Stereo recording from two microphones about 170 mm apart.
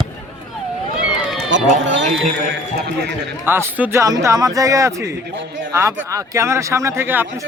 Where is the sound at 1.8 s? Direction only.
90° right.